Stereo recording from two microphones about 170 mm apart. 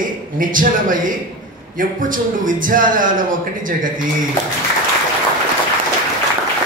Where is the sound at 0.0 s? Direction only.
50° right (ahead or behind).